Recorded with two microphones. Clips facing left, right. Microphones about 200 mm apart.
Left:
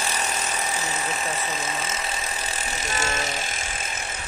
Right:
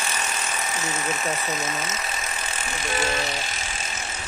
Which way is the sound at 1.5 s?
30° left (ahead or behind).